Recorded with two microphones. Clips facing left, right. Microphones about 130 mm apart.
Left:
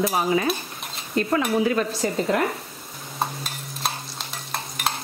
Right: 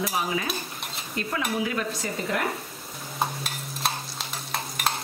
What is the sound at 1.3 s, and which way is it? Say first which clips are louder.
Speech: left 6 dB; 40° left (ahead or behind).